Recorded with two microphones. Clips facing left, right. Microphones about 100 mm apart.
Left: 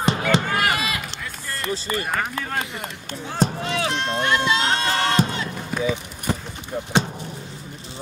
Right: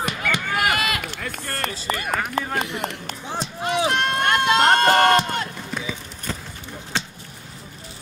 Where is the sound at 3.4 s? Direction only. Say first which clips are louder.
Left 11 dB; 50° left (ahead or behind).